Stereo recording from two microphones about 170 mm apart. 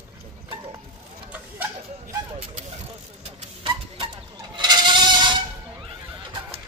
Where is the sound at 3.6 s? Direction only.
30° right (ahead or behind).